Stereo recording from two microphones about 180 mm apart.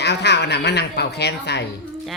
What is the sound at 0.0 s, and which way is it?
A woman's voice, 70° left (ahead or behind).